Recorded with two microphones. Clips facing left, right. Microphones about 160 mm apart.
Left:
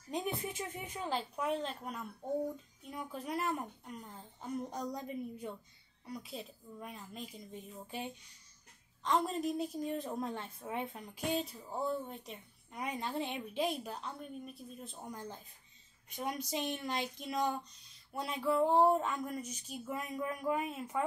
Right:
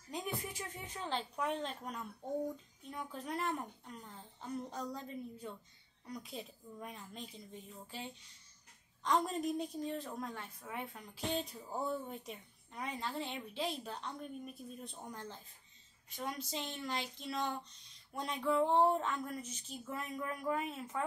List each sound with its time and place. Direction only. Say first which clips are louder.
0.1 s a woman's voice: left 4 dB; 25° left (ahead or behind)
6.0 s a woman's voice: left 1 dB; 5° left (ahead or behind)
7.8 s speech: left 5 dB; 15° left (ahead or behind)
9.0 s a woman's voice: left 1 dB; centre (ahead or behind)
10.0 s a woman's voice: left 5 dB; 25° left (ahead or behind)
11.2 s speech: left 3 dB; 10° left (ahead or behind)
11.7 s a woman's voice: left 2 dB; centre (ahead or behind)
12.7 s speech: left 3 dB; 15° left (ahead or behind)